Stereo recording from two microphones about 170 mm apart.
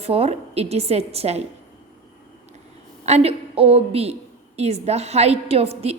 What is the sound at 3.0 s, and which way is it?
A woman's voice, 40° right (ahead or behind).